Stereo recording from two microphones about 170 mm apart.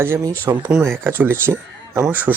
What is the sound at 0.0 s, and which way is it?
Speech, 15° right (ahead or behind).